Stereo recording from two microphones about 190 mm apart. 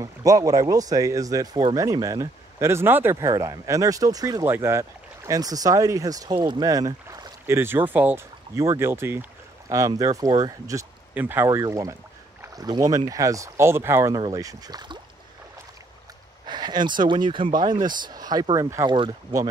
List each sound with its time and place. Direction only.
0.0 s speech: 20° right (ahead or behind)
16.4 s speech: 20° right (ahead or behind)